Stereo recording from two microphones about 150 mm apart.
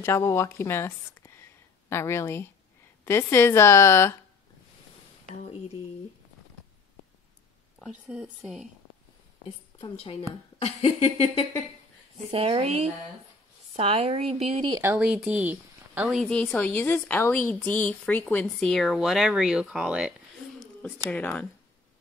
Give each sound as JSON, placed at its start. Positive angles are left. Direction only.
{"t": 0.0, "sound": "a woman's voice", "side_deg": 15}
{"t": 5.3, "sound": "speech", "side_deg": 55}
{"t": 7.8, "sound": "speech", "side_deg": 0}
{"t": 9.8, "sound": "a woman's voice", "side_deg": 30}
{"t": 10.6, "sound": "speech", "side_deg": 45}
{"t": 12.3, "sound": "speech", "side_deg": -40}
{"t": 14.8, "sound": "speech", "side_deg": -10}
{"t": 16.2, "sound": "a woman's voice", "side_deg": 5}
{"t": 20.8, "sound": "a woman's voice", "side_deg": 10}